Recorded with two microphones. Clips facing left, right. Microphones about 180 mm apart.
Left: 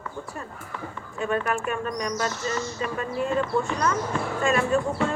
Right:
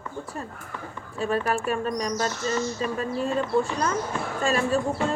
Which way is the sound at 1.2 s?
35° right (ahead or behind).